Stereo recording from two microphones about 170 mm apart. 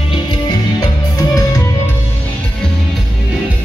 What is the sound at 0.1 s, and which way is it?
Music, 25° left (ahead or behind).